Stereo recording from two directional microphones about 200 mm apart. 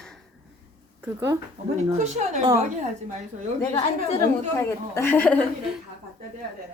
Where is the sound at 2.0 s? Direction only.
35° right (ahead or behind).